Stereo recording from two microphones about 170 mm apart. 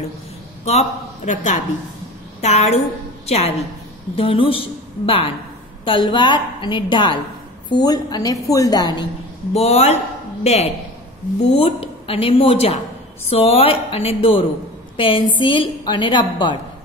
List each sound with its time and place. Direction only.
0.7 s a man's voice: 40° left (ahead or behind); by 9.0 s 25° left (ahead or behind)
9.5 s a woman's voice: 40° left (ahead or behind)